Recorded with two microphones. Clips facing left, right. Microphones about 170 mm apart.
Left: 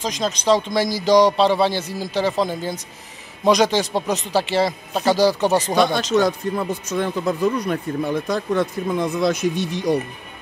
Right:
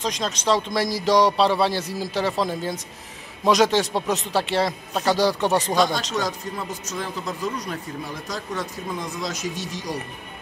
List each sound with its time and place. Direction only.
0.0 s a man's voice: centre (ahead or behind)
5.8 s speech: 60° left (ahead or behind)